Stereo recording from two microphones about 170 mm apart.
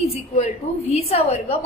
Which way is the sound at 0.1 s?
40° left (ahead or behind).